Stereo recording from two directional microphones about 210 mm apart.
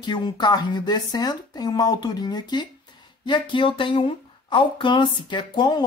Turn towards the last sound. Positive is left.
turn(degrees=20)  # may be behind; listen again after turning